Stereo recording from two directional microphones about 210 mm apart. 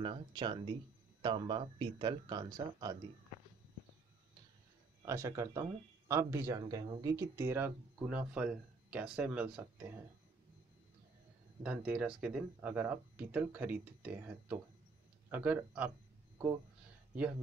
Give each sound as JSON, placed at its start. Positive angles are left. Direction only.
{"t": 0.0, "sound": "speech", "side_deg": -25}
{"t": 5.0, "sound": "speech", "side_deg": -15}
{"t": 11.6, "sound": "speech", "side_deg": -5}
{"t": 17.1, "sound": "speech", "side_deg": -5}